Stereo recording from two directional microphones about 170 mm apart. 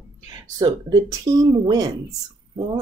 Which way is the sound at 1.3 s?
25° right (ahead or behind).